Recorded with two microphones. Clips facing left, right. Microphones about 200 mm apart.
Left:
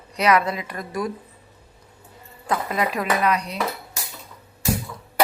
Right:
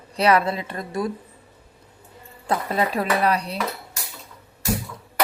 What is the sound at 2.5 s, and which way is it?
Speech, 30° right (ahead or behind).